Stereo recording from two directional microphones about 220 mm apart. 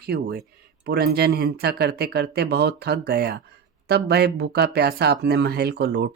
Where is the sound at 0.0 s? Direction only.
45° right (ahead or behind).